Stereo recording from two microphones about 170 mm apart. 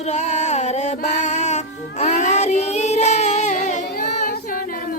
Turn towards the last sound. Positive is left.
turn(degrees=45)  # may be behind; listen again after turning